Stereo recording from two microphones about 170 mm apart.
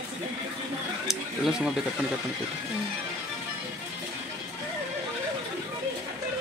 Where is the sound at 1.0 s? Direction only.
Centre (ahead or behind).